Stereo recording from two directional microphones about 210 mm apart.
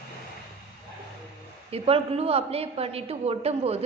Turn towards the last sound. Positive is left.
turn(degrees=-30)  # may be behind; listen again after turning